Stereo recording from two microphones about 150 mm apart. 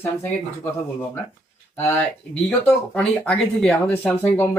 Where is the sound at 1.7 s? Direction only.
15° left (ahead or behind).